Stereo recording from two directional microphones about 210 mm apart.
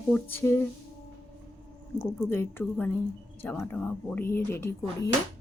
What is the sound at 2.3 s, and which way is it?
Speech, 10° left (ahead or behind).